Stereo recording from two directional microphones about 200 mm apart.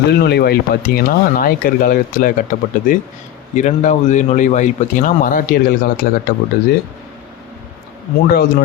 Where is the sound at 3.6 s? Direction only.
35° left (ahead or behind).